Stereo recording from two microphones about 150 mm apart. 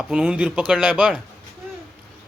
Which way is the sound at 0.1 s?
5° right (ahead or behind).